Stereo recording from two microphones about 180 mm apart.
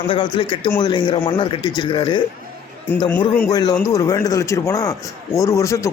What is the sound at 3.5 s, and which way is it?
Speech, 20° left (ahead or behind).